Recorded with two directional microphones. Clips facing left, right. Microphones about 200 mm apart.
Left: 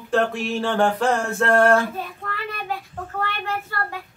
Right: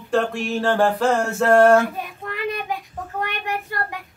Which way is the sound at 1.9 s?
15° right (ahead or behind).